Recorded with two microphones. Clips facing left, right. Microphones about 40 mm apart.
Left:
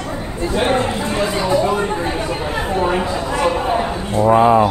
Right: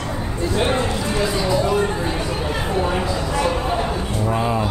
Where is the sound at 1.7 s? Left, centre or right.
Centre.